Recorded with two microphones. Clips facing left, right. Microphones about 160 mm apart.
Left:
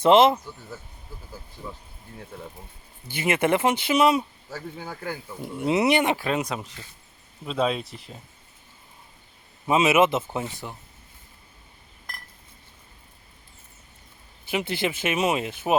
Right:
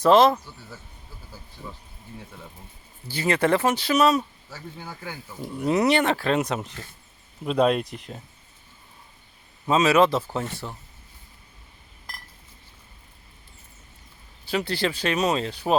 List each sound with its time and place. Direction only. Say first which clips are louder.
0.0 s speech: even; 25° left (ahead or behind)
3.1 s speech: right 1 dB; 20° left (ahead or behind)
4.8 s speech: left 3 dB; centre (ahead or behind)
5.7 s speech: even; 10° left (ahead or behind)
9.6 s speech: right 1 dB; 15° left (ahead or behind)
14.5 s speech: right 1 dB; 20° left (ahead or behind)